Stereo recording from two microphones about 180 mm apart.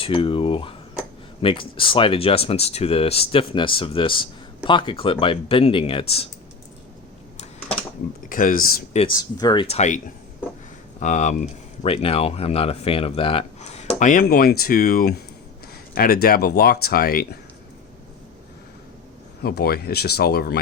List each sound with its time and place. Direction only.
0.0 s speech: 30° left (ahead or behind)
8.3 s speech: 50° left (ahead or behind)
9.0 s speech: 25° left (ahead or behind)
9.6 s speech: 40° left (ahead or behind)
11.0 s speech: 40° left (ahead or behind)
19.4 s speech: 60° left (ahead or behind)